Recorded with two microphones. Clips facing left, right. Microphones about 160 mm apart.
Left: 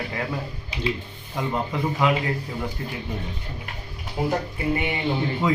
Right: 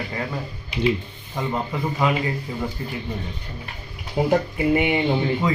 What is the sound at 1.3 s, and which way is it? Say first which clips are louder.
Speech: right 1 dB; centre (ahead or behind).